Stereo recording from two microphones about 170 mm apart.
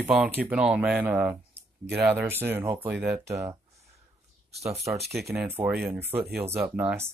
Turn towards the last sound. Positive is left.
turn(degrees=-10)  # may be behind; listen again after turning